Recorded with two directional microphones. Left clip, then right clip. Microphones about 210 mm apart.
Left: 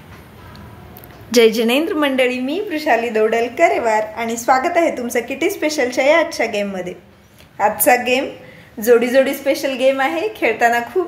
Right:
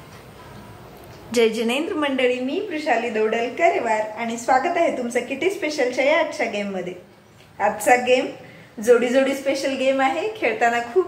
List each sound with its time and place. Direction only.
1.3 s a woman's voice: 45° left (ahead or behind)